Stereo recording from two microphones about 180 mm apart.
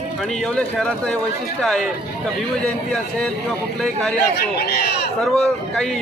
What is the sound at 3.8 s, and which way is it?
Speech, centre (ahead or behind).